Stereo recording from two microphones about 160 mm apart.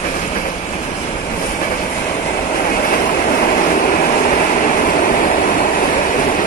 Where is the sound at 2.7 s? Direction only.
60° left (ahead or behind).